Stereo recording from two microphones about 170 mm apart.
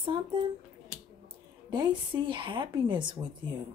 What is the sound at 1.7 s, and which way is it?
Speech, 25° right (ahead or behind).